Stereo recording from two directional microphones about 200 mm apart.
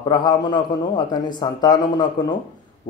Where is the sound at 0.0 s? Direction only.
20° left (ahead or behind).